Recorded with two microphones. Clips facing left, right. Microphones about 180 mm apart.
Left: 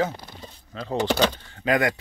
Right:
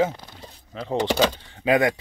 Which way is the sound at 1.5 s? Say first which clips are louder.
Right 3 dB; 20° right (ahead or behind).